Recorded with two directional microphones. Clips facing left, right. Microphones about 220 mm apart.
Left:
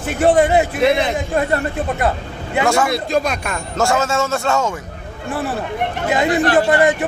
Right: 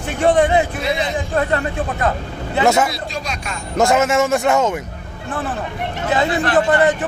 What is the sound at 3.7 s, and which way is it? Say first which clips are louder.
A man's voice: right 3 dB; 20° right (ahead or behind).